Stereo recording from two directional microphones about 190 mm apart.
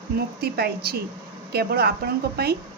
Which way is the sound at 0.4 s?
55° right (ahead or behind).